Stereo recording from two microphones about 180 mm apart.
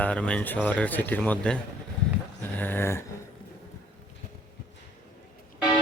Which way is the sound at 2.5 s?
10° left (ahead or behind).